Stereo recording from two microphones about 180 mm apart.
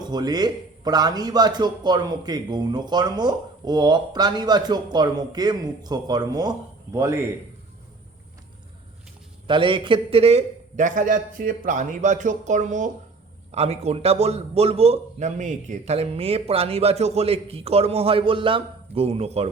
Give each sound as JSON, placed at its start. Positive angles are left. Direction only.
{"t": 0.1, "sound": "a man's voice", "side_deg": -20}
{"t": 9.5, "sound": "a man's voice", "side_deg": -25}